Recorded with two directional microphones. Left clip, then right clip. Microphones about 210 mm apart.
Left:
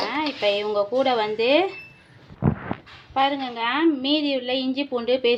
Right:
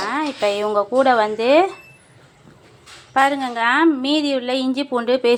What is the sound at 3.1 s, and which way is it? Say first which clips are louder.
Speech: right 5 dB; 15° right (ahead or behind).